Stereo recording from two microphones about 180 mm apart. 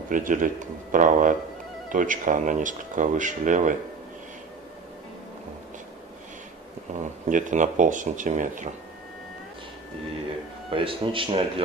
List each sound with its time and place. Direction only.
0.1 s speech: 45° right (ahead or behind)
6.9 s speech: 45° right (ahead or behind)
10.7 s speech: 30° right (ahead or behind)